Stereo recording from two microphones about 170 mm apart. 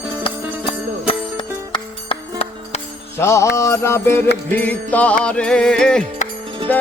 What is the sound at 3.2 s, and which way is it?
Music, 15° left (ahead or behind).